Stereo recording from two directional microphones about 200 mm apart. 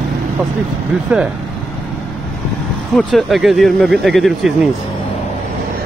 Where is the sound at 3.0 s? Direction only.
Centre (ahead or behind).